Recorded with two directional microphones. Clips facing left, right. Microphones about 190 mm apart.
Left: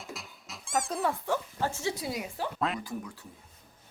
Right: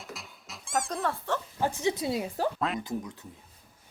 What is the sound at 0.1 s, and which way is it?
Cat, centre (ahead or behind).